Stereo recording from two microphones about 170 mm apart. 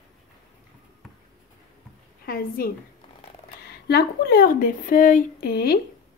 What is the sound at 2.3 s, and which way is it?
Speech, 60° left (ahead or behind).